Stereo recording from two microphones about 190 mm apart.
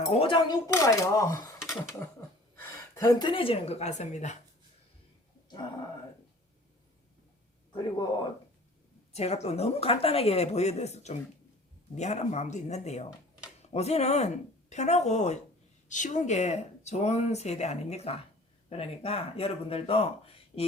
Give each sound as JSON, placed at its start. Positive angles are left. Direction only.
{"t": 0.1, "sound": "speech", "side_deg": 30}
{"t": 1.6, "sound": "a sound", "side_deg": 0}
{"t": 2.6, "sound": "a woman's voice", "side_deg": 15}
{"t": 7.7, "sound": "speech", "side_deg": 25}
{"t": 9.1, "sound": "speech", "side_deg": 35}